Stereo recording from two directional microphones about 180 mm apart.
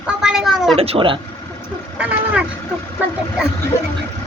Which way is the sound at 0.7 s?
30° right (ahead or behind).